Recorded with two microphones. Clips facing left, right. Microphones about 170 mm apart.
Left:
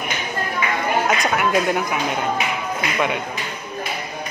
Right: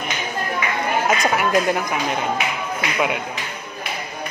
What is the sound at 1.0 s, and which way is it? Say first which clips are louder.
Speech: even; centre (ahead or behind).